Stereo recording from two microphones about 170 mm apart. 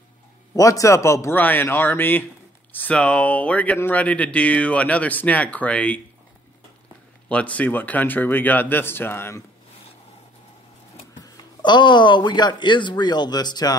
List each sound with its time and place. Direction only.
0.6 s speech: 20° left (ahead or behind)
7.2 s speech: 10° left (ahead or behind)
11.2 s speech: 25° left (ahead or behind)